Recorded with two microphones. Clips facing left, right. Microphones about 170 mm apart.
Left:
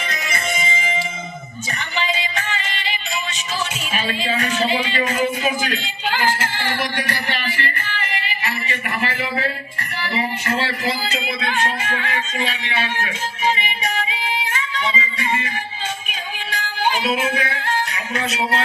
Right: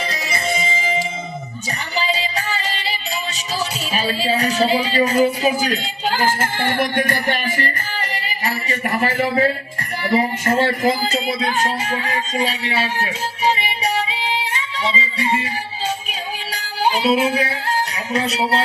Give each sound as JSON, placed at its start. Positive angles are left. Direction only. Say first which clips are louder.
{"t": 0.1, "sound": "music", "louder": "right 2 dB", "side_deg": -35}
{"t": 2.0, "sound": "music", "louder": "right 2 dB", "side_deg": -35}
{"t": 3.9, "sound": "speech", "louder": "right 3 dB", "side_deg": -35}
{"t": 13.6, "sound": "female singing", "louder": "right 3 dB", "side_deg": -35}
{"t": 16.0, "sound": "yodeling", "louder": "right 2 dB", "side_deg": -35}
{"t": 18.1, "sound": "speech", "louder": "right 4 dB", "side_deg": -35}